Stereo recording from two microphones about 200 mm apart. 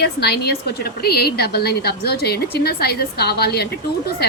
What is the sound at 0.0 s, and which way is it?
A woman's voice, 55° left (ahead or behind).